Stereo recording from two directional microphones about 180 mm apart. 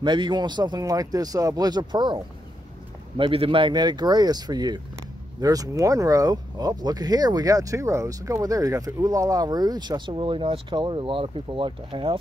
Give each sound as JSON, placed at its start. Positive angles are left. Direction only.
{"t": 0.0, "sound": "speech", "side_deg": -25}